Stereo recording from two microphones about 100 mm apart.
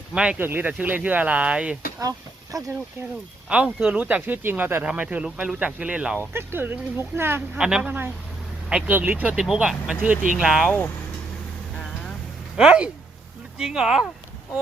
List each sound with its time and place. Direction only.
0.1 s speech: 10° right (ahead or behind)
2.0 s speech: 35° right (ahead or behind)
3.5 s speech: 10° right (ahead or behind)
6.3 s speech: 20° right (ahead or behind)
7.6 s speech: 10° right (ahead or behind)
9.3 s speech: 5° right (ahead or behind)
12.5 s speech: 10° right (ahead or behind)